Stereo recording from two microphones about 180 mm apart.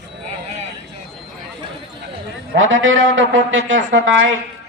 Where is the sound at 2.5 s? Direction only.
90° right.